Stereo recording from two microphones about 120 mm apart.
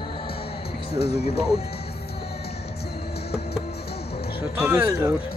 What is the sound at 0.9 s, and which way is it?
Speech, 60° left (ahead or behind).